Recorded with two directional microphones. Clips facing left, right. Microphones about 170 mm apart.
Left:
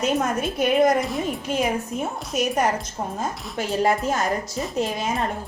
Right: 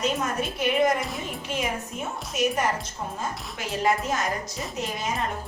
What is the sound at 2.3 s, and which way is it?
Speech, 40° left (ahead or behind).